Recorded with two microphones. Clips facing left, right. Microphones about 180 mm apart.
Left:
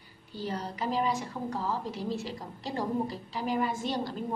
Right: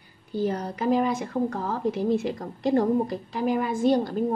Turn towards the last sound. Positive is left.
turn(degrees=-50)  # may be behind; listen again after turning